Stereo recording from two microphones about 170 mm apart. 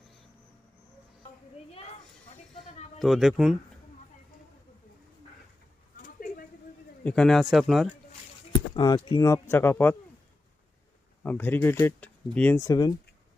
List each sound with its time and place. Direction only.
2.6 s bleat: 40° left (ahead or behind)
3.0 s speech: centre (ahead or behind)
6.1 s a sound: 55° left (ahead or behind)
7.0 s speech: 5° left (ahead or behind)
8.7 s speech: 25° left (ahead or behind)
11.2 s speech: 10° left (ahead or behind)
12.5 s speech: 20° left (ahead or behind)